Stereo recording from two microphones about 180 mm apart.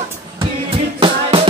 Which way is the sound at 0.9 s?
30° right (ahead or behind).